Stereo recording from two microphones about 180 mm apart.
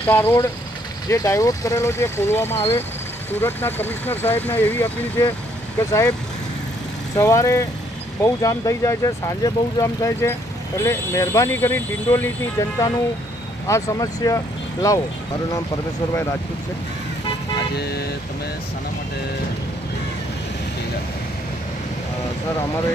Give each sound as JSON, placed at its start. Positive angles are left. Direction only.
{"t": 0.0, "sound": "speech", "side_deg": 10}
{"t": 7.2, "sound": "speech", "side_deg": 20}
{"t": 17.7, "sound": "speech", "side_deg": 65}